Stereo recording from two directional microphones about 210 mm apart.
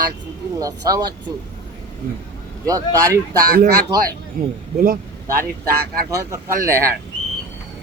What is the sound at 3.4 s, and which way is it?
Speech, 45° right (ahead or behind).